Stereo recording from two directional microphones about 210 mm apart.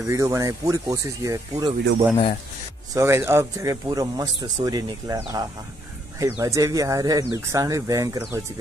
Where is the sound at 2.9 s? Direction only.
15° right (ahead or behind).